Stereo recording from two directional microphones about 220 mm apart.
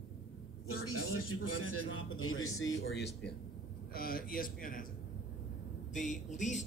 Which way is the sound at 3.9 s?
40° left (ahead or behind).